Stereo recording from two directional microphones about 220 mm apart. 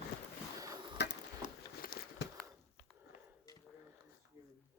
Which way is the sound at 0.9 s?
50° left (ahead or behind).